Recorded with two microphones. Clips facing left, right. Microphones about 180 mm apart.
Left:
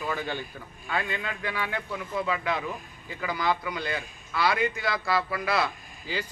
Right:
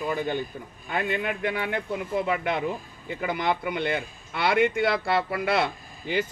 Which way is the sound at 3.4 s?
25° right (ahead or behind).